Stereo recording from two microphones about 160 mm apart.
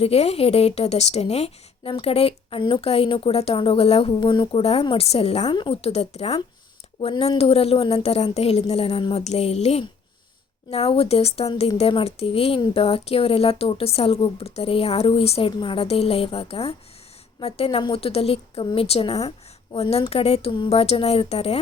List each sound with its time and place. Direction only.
0.0 s speech: 40° left (ahead or behind)